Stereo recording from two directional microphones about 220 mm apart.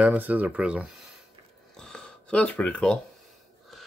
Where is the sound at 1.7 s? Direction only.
5° left (ahead or behind).